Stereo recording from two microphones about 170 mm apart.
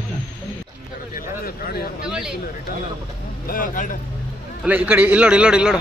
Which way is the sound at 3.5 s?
55° left (ahead or behind).